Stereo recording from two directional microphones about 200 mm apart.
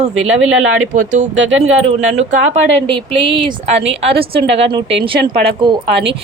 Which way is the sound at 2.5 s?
25° right (ahead or behind).